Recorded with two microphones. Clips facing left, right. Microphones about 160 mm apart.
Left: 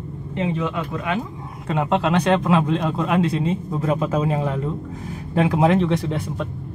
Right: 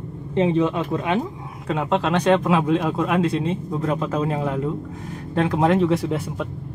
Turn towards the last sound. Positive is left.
turn(degrees=-5)  # may be behind; listen again after turning